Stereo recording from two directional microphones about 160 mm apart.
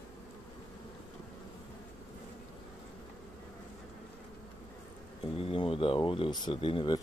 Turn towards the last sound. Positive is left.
turn(degrees=30)  # may be behind; listen again after turning